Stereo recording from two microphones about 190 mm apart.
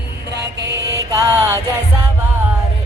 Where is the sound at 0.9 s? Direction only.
15° right (ahead or behind).